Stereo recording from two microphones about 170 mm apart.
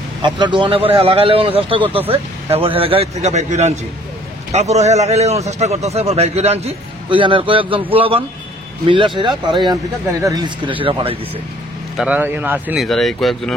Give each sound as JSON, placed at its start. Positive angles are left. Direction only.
{"t": 0.2, "sound": "a man's voice", "side_deg": -25}
{"t": 12.0, "sound": "speech", "side_deg": -10}
{"t": 12.8, "sound": "speech", "side_deg": 0}